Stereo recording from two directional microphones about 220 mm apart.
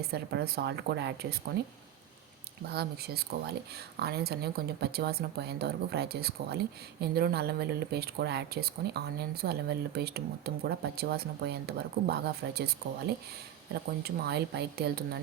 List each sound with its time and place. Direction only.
0.1 s speech: 45° right (ahead or behind)
2.6 s speech: 45° right (ahead or behind)
13.7 s speech: 45° right (ahead or behind)